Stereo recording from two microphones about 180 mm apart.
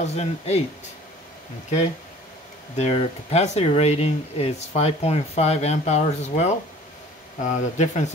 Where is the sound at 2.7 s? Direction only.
35° left (ahead or behind).